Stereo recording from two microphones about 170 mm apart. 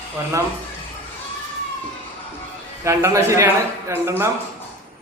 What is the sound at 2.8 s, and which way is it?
A man's voice, 15° right (ahead or behind).